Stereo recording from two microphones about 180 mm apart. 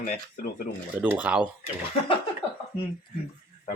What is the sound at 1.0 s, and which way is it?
Speech, 10° right (ahead or behind).